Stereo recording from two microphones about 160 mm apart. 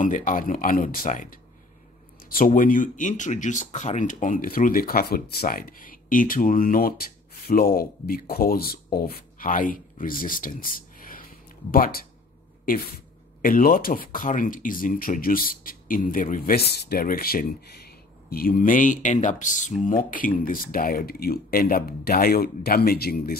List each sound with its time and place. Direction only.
0.0 s speech: 55° left (ahead or behind)
13.4 s speech: 60° left (ahead or behind)